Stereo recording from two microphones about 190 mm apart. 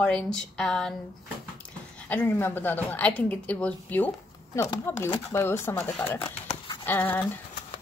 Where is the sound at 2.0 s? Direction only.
10° left (ahead or behind).